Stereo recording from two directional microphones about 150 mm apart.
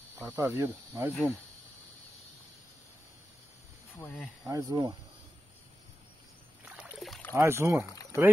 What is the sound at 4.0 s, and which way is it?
Speech, 15° left (ahead or behind).